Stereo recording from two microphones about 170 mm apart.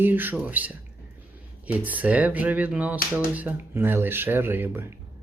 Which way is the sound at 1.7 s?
10° right (ahead or behind).